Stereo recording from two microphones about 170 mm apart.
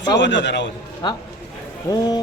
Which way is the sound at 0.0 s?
90° left.